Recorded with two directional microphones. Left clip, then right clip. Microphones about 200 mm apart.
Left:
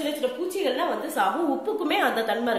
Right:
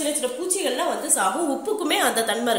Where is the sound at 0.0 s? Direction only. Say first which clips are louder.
Right 1 dB; 15° right (ahead or behind).